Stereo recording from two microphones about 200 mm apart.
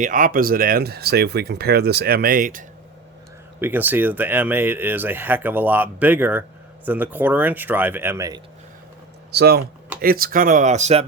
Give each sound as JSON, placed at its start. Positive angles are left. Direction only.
{"t": 0.0, "sound": "speech", "side_deg": -40}
{"t": 3.6, "sound": "speech", "side_deg": -10}
{"t": 9.3, "sound": "speech", "side_deg": -55}